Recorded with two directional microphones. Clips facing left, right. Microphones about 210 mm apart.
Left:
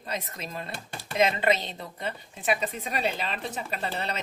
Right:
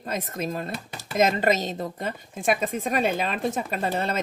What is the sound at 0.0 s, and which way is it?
Speech, 45° right (ahead or behind).